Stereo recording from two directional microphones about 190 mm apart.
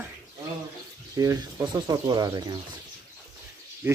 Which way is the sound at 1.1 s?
15° right (ahead or behind).